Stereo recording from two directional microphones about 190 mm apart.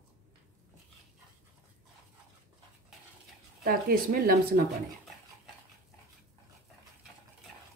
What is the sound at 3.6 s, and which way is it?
Speech, 50° right (ahead or behind).